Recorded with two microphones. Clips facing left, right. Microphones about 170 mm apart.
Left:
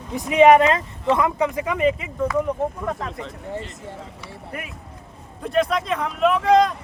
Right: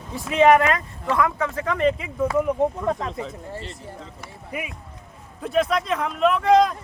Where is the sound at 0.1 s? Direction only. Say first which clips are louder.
Left 3 dB; 15° left (ahead or behind); by 3.3 s centre (ahead or behind).